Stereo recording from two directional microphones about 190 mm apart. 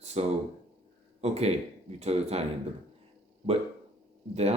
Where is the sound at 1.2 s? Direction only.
35° right (ahead or behind).